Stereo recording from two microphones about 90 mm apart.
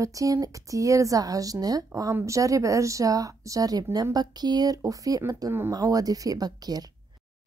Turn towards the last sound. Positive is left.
turn(degrees=-45)  # may be behind; listen again after turning